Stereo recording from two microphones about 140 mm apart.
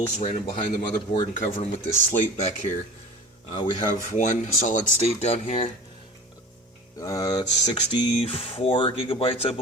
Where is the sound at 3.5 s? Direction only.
40° left (ahead or behind).